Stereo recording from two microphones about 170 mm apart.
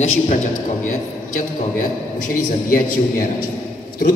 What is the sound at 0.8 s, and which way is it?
A man's voice, 55° left (ahead or behind).